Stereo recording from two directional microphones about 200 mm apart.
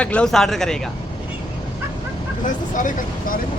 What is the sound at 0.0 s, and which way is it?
Speech, 5° left (ahead or behind).